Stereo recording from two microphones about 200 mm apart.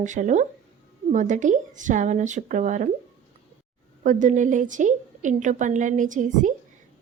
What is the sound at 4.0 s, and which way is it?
Speech, 40° right (ahead or behind).